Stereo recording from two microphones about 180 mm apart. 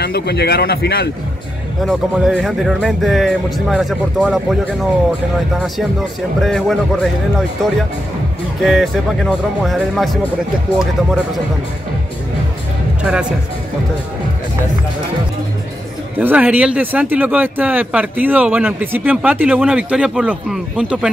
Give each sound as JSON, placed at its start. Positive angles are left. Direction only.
{"t": 0.0, "sound": "speech", "side_deg": 65}
{"t": 1.9, "sound": "speech", "side_deg": 0}
{"t": 6.4, "sound": "speech", "side_deg": 0}
{"t": 13.0, "sound": "speech", "side_deg": -5}
{"t": 16.2, "sound": "speech", "side_deg": -10}